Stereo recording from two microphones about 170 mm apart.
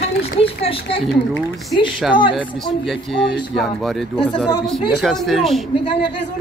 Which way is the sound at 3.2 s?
Centre (ahead or behind).